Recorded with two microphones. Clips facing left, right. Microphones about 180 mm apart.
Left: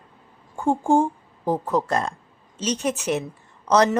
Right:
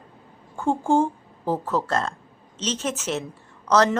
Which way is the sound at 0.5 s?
15° left (ahead or behind).